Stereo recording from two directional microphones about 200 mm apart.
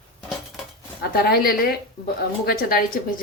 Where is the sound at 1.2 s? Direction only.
50° left (ahead or behind).